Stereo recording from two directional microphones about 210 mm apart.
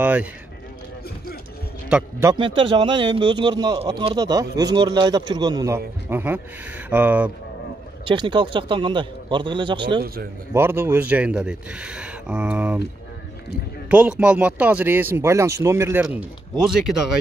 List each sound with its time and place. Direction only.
0.0 s speech: 5° right (ahead or behind)
1.9 s speech: 10° right (ahead or behind)
2.3 s speech: 25° right (ahead or behind); by 7.2 s 10° right (ahead or behind)
8.0 s speech: 25° right (ahead or behind)
10.5 s speech: 10° right (ahead or behind)
13.8 s speech: 5° right (ahead or behind)